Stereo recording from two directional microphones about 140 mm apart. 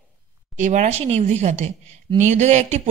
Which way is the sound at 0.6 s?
60° right (ahead or behind).